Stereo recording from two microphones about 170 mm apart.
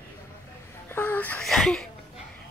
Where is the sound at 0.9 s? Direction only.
10° left (ahead or behind).